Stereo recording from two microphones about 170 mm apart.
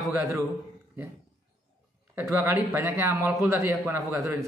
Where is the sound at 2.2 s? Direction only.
15° right (ahead or behind).